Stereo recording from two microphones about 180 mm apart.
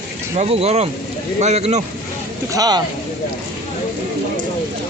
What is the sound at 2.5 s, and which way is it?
Speech, 20° right (ahead or behind).